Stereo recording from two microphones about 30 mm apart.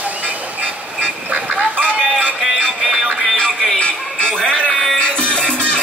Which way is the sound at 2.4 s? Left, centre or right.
Centre.